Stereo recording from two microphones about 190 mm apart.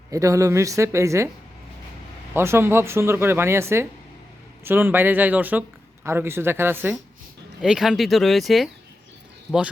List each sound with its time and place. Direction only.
0.1 s speech: 15° right (ahead or behind)
2.3 s speech: 15° right (ahead or behind)